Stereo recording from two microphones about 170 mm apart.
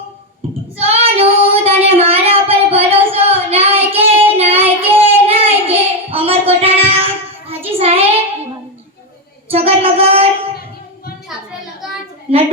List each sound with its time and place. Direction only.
0.8 s child singing: 35° right (ahead or behind)
4.5 s child singing: 10° right (ahead or behind)
5.3 s child singing: 35° right (ahead or behind)
9.5 s child singing: 35° right (ahead or behind)
12.3 s a woman's voice: 35° right (ahead or behind)